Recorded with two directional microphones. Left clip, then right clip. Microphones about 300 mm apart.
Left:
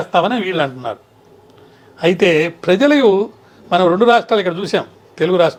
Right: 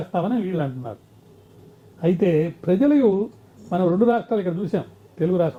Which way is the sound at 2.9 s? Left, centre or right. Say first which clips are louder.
Left 7 dB; centre.